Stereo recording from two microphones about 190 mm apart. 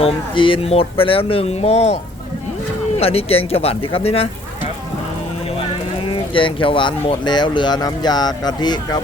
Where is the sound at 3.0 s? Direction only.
30° left (ahead or behind).